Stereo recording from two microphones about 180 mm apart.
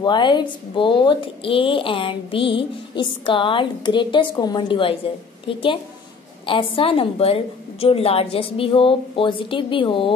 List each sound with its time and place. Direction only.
0.0 s a woman's voice: 25° left (ahead or behind)
6.4 s a woman's voice: 30° left (ahead or behind)